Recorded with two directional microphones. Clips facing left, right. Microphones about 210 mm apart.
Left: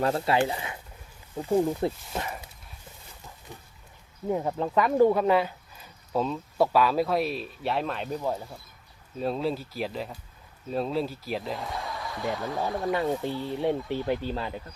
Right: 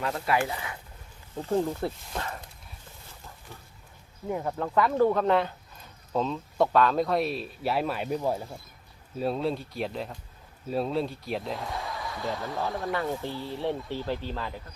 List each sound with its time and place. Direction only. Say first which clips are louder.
0.0 s speech: left 3 dB; 30° left (ahead or behind)
1.4 s speech: left 3 dB; 10° left (ahead or behind)
4.3 s speech: left 3 dB; 20° left (ahead or behind); by 12.6 s centre (ahead or behind)
12.8 s speech: left 3 dB; 20° left (ahead or behind)